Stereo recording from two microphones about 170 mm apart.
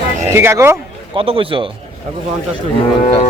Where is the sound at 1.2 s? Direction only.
35° right (ahead or behind).